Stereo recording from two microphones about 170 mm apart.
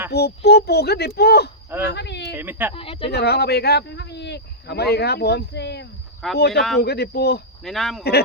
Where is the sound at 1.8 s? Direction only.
90° left.